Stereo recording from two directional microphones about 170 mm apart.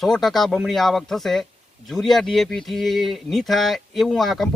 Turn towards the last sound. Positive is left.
turn(degrees=0)  # may be behind; listen again after turning